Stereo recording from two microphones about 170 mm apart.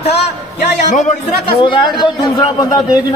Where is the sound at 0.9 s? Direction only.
50° left (ahead or behind).